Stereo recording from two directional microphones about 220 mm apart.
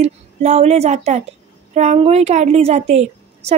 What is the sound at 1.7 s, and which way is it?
A woman's voice, 30° right (ahead or behind).